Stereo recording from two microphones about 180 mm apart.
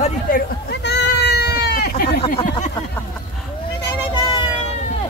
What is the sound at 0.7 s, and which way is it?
Bleat, 70° left (ahead or behind).